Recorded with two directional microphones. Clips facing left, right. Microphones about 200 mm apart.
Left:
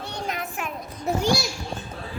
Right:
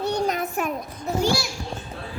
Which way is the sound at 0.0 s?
40° right (ahead or behind).